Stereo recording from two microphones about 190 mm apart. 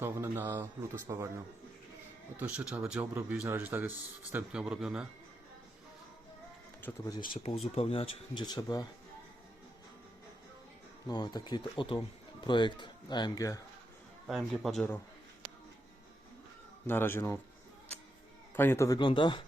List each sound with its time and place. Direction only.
0.0 s speech: 10° right (ahead or behind)
2.4 s speech: 10° right (ahead or behind)
6.8 s speech: 15° left (ahead or behind)
7.8 s speech: 30° left (ahead or behind)
11.1 s speech: 20° left (ahead or behind)
14.3 s a man's voice: centre (ahead or behind)
16.8 s speech: 10° left (ahead or behind)
18.5 s speech: 10° left (ahead or behind)